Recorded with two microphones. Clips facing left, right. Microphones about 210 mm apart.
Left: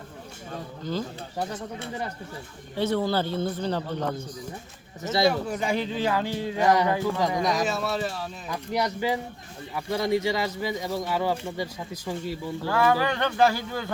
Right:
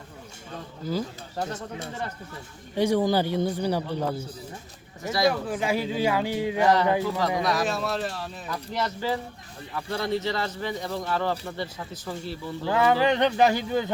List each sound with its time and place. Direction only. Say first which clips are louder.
0.9 s a man's voice: right 1 dB; 10° right (ahead or behind)
2.7 s a man's voice: right 3 dB; 15° right (ahead or behind)
5.3 s a man's voice: even; centre (ahead or behind)
6.6 s speech: even; 15° left (ahead or behind)
7.6 s speech: even; centre (ahead or behind)
8.4 s speech: left 3 dB; 15° left (ahead or behind)
12.6 s speech: right 2 dB; 20° right (ahead or behind)